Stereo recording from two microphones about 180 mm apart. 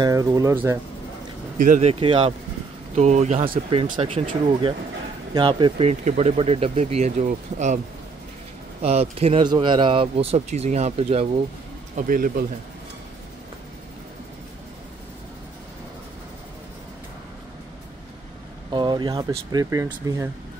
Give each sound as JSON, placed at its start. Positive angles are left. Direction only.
{"t": 0.0, "sound": "speech", "side_deg": -20}
{"t": 1.6, "sound": "speech", "side_deg": -40}
{"t": 8.8, "sound": "speech", "side_deg": -35}
{"t": 12.1, "sound": "speech", "side_deg": -50}
{"t": 18.7, "sound": "speech", "side_deg": -25}